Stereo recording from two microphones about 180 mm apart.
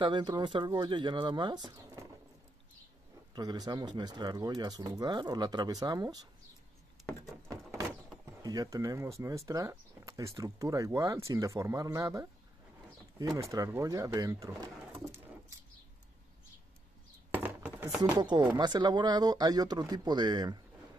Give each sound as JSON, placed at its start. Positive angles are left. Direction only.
{"t": 0.0, "sound": "speech", "side_deg": -25}
{"t": 3.3, "sound": "speech", "side_deg": -20}
{"t": 7.0, "sound": "a sound", "side_deg": 0}
{"t": 7.4, "sound": "speech", "side_deg": -15}
{"t": 13.5, "sound": "speech", "side_deg": -15}
{"t": 17.3, "sound": "a sound", "side_deg": -10}
{"t": 18.0, "sound": "speech", "side_deg": -25}